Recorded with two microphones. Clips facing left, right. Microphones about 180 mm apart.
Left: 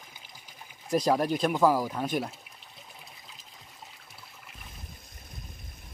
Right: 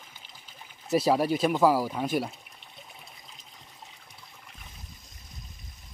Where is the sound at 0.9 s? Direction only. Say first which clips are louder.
Right 2 dB; 5° right (ahead or behind).